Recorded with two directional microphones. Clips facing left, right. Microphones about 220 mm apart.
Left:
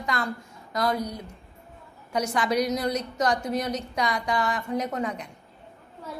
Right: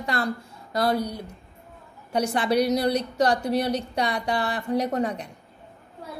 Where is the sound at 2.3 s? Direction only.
30° right (ahead or behind).